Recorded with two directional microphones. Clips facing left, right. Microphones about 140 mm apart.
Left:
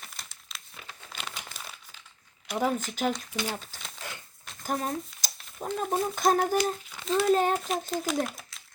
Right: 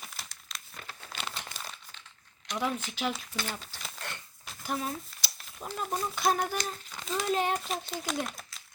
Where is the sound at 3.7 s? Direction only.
Centre (ahead or behind).